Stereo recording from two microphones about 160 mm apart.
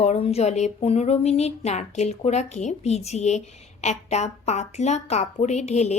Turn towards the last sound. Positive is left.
turn(degrees=45)  # may be behind; listen again after turning